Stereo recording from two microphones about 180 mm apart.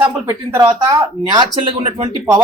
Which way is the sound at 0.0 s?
15° right (ahead or behind).